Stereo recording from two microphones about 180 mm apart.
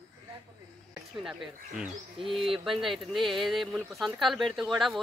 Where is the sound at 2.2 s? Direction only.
30° right (ahead or behind).